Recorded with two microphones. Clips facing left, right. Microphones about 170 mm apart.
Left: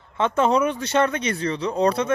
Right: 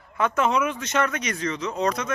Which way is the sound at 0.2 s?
30° left (ahead or behind).